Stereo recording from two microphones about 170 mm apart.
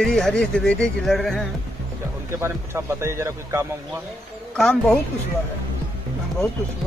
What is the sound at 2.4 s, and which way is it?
Speech, 15° right (ahead or behind).